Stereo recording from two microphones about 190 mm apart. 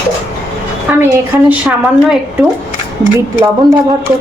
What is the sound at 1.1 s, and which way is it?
A woman's voice, 10° right (ahead or behind).